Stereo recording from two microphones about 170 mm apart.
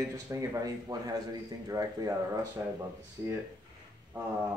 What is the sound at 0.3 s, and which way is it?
Speech, 20° right (ahead or behind).